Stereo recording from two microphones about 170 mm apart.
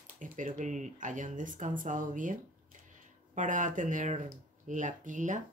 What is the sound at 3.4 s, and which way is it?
Speech, 50° right (ahead or behind).